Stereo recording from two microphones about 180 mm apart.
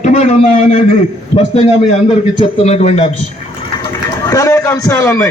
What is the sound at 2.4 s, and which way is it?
Speech, 35° left (ahead or behind).